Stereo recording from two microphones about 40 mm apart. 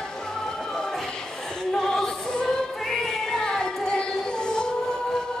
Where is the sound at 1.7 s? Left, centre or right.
Centre.